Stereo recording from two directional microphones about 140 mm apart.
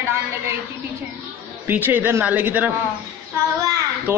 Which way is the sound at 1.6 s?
15° right (ahead or behind).